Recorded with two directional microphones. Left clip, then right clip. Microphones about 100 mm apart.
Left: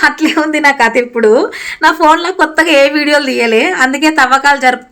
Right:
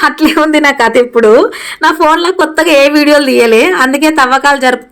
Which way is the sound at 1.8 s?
35° right (ahead or behind).